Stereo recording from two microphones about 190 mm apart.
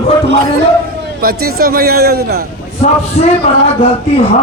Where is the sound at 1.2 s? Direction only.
50° right (ahead or behind).